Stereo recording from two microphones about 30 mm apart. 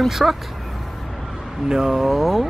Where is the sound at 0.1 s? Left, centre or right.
Centre.